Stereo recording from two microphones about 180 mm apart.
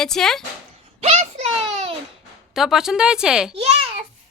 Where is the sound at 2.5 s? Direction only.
Centre (ahead or behind).